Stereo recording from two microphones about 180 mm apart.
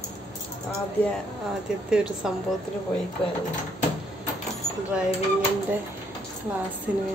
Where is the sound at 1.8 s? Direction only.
5° right (ahead or behind).